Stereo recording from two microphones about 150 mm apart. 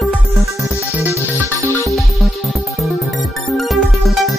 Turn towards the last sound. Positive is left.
turn(degrees=0)  # may be behind; listen again after turning